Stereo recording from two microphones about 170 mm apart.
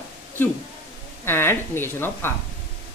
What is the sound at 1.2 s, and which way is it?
Speech, 15° left (ahead or behind).